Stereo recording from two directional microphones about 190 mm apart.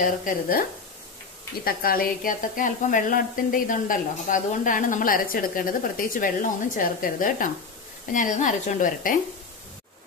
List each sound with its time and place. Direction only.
0.0 s speech: 45° left (ahead or behind)